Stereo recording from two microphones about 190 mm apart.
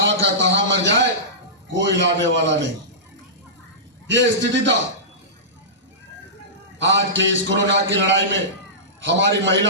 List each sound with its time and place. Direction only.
0.0 s a sound: 70° right (ahead or behind)
1.7 s a man's voice: 70° right (ahead or behind)
4.1 s a man's voice: 70° right (ahead or behind)
6.7 s a man's voice: 70° right (ahead or behind)